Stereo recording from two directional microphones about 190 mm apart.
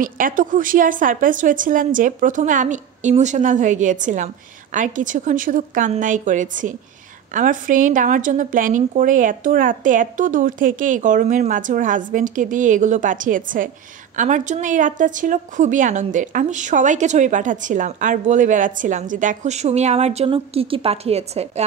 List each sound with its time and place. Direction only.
0.0 s a woman's voice: 45° right (ahead or behind)